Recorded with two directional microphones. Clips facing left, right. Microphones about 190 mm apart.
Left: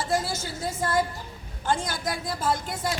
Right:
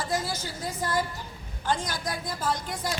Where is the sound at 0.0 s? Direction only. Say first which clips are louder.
Left 3 dB; 25° left (ahead or behind).